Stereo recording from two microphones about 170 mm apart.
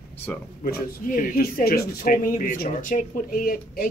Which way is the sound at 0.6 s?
55° left (ahead or behind).